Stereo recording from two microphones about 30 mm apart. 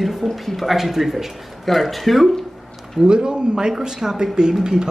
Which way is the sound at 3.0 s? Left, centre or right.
Right.